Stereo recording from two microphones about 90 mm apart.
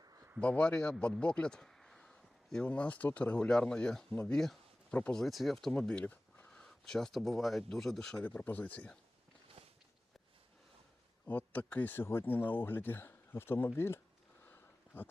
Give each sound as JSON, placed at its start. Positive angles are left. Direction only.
{"t": 0.3, "sound": "a man's voice", "side_deg": 15}
{"t": 4.3, "sound": "a sound", "side_deg": 5}
{"t": 5.1, "sound": "speech", "side_deg": 0}
{"t": 9.6, "sound": "walk", "side_deg": -90}
{"t": 11.3, "sound": "speech", "side_deg": 20}
{"t": 14.4, "sound": "a sound", "side_deg": 25}